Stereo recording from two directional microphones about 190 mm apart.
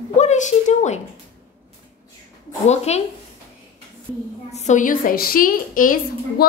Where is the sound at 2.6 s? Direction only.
35° left (ahead or behind).